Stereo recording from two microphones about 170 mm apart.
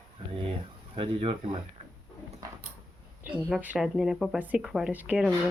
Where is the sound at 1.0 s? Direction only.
35° right (ahead or behind).